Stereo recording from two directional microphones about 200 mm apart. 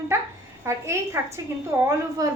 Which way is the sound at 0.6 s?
15° right (ahead or behind).